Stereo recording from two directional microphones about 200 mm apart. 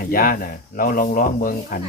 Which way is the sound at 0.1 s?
45° left (ahead or behind).